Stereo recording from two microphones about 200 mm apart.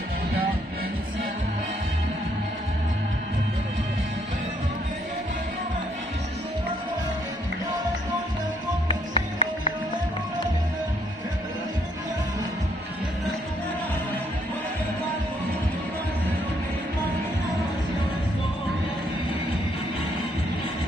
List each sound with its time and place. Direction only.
8.8 s music: 30° left (ahead or behind)